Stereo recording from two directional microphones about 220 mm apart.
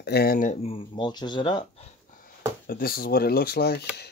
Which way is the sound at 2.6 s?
40° left (ahead or behind).